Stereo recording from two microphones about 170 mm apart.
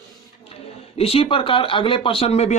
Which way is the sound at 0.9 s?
35° left (ahead or behind).